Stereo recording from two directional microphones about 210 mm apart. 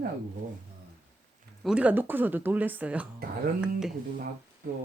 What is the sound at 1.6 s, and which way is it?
A woman's voice, 5° right (ahead or behind).